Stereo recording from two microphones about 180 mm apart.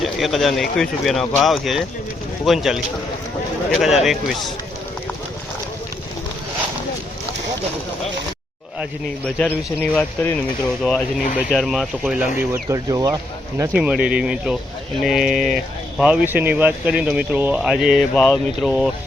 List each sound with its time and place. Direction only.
0.0 s speech: centre (ahead or behind)
9.2 s speech: 10° left (ahead or behind)
12.4 s speech: 15° right (ahead or behind)
13.7 s speech: 5° right (ahead or behind)
18.1 s speech: 10° left (ahead or behind)